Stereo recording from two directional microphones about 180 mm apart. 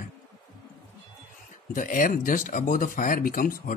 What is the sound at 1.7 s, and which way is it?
Speech, 45° left (ahead or behind).